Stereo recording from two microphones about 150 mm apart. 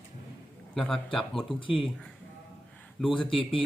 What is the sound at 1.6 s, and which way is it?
Speech, 35° left (ahead or behind).